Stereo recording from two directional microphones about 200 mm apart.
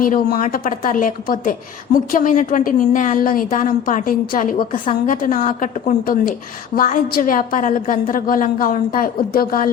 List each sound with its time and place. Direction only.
0.0 s a woman's voice: 45° left (ahead or behind)